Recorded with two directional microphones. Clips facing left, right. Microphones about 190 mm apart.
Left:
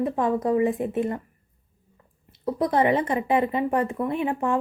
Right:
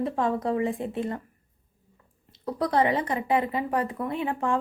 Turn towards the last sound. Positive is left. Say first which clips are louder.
# left 3 dB
turn(degrees=20)  # may be behind; listen again after turning